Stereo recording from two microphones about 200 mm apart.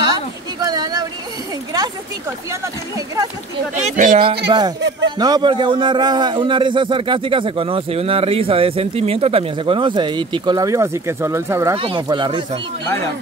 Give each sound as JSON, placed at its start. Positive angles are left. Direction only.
{"t": 0.0, "sound": "a sound", "side_deg": -20}
{"t": 3.8, "sound": "speech", "side_deg": -40}
{"t": 4.5, "sound": "a man's voice", "side_deg": -20}
{"t": 11.7, "sound": "a man's voice", "side_deg": -25}